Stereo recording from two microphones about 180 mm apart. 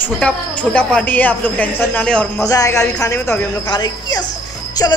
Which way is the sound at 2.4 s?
20° left (ahead or behind).